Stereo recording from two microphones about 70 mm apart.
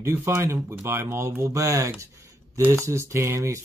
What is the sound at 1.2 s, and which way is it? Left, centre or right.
Speech, right.